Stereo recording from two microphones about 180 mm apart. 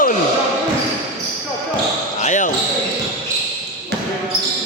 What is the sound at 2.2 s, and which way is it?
Basketball bounce, 45° left (ahead or behind).